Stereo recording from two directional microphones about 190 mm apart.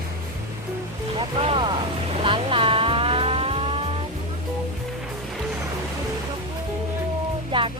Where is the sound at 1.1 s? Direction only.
30° right (ahead or behind).